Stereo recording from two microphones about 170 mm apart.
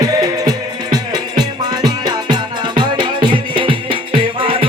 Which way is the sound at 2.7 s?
25° right (ahead or behind).